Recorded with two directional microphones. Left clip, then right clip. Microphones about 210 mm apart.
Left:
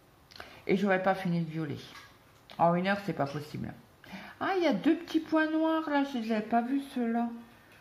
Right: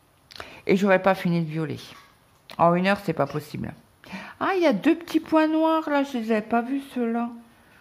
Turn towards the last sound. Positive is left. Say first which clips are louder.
# right 5 dB
turn(degrees=-40)  # may be behind; listen again after turning